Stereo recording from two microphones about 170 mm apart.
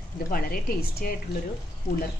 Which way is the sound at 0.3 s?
60° left (ahead or behind).